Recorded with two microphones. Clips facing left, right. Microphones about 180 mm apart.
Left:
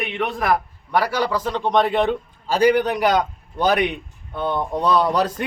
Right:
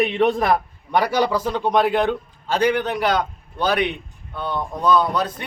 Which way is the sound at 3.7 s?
45° left (ahead or behind).